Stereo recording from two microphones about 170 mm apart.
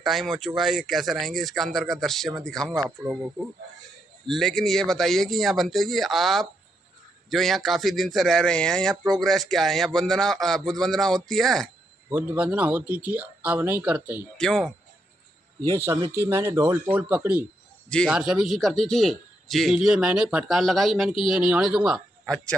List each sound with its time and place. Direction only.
0.0 s a man's voice: centre (ahead or behind)
2.7 s speech: 20° right (ahead or behind)
4.3 s a man's voice: centre (ahead or behind)
12.1 s speech: 10° right (ahead or behind)
14.3 s a man's voice: centre (ahead or behind)
16.2 s speech: 15° right (ahead or behind)
17.8 s a man's voice: 5° left (ahead or behind)